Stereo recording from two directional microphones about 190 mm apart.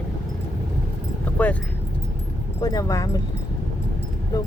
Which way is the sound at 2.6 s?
20° left (ahead or behind).